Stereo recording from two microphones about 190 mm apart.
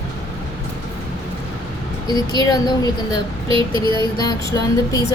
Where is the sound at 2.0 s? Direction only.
20° left (ahead or behind).